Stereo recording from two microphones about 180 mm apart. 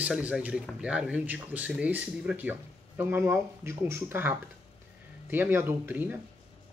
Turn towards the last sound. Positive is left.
turn(degrees=-10)  # may be behind; listen again after turning